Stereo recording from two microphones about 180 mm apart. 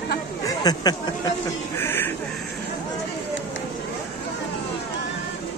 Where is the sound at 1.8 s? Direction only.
10° left (ahead or behind).